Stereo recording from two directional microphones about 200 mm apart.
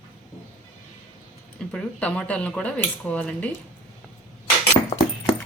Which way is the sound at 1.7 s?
5° left (ahead or behind).